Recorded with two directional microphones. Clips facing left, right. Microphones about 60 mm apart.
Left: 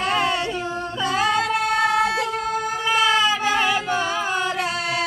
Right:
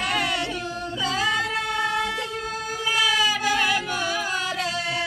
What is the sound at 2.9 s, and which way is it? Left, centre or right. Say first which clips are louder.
Music: left 3 dB; left.